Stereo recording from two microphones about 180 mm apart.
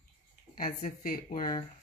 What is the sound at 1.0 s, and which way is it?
Speech, 50° left (ahead or behind).